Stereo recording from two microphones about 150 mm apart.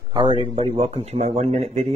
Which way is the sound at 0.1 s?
35° right (ahead or behind).